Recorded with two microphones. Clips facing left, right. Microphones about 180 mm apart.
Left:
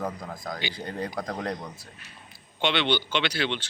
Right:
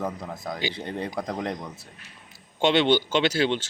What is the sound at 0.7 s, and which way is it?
Speech, 25° right (ahead or behind).